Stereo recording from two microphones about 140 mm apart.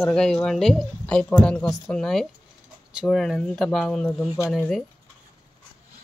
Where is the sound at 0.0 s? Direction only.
5° left (ahead or behind).